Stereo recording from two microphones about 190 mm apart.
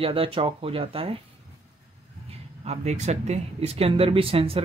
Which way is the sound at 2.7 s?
35° right (ahead or behind).